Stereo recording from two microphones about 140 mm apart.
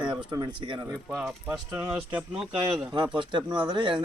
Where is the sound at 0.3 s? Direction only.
30° right (ahead or behind).